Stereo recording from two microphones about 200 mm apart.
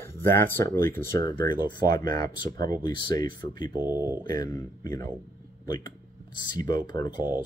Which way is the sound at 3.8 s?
10° right (ahead or behind).